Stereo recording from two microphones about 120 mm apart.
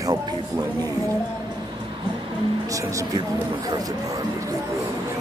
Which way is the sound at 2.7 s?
25° right (ahead or behind).